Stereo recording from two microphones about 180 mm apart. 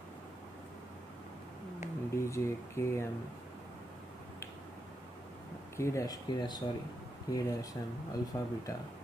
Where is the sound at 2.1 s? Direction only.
15° left (ahead or behind).